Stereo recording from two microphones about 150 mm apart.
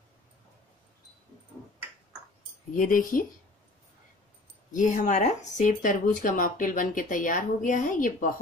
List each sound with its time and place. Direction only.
2.7 s speech: 60° left (ahead or behind)
4.7 s speech: 55° left (ahead or behind)